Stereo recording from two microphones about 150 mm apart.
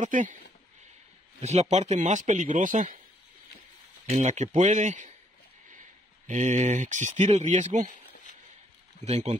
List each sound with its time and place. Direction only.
0.0 s a man's voice: 60° right (ahead or behind)
1.4 s a man's voice: 45° right (ahead or behind)
4.1 s speech: 50° right (ahead or behind)
9.0 s speech: 45° right (ahead or behind)